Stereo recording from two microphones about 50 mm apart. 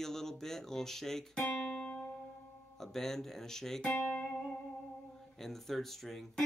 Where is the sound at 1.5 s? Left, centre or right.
Centre.